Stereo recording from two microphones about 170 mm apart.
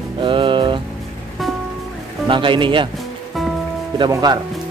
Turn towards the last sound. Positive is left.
turn(degrees=-25)  # may be behind; listen again after turning